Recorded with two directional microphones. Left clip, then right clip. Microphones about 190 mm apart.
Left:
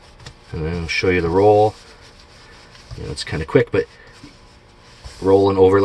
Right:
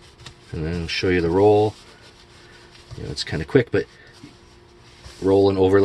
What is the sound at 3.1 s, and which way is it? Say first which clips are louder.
Speech: left 2 dB; 30° right (ahead or behind).